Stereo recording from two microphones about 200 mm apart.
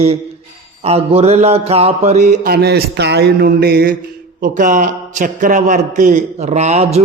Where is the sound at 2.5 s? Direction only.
55° right (ahead or behind).